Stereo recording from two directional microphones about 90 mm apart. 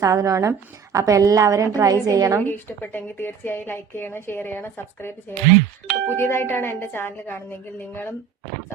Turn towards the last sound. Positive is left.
turn(degrees=25)  # may be behind; listen again after turning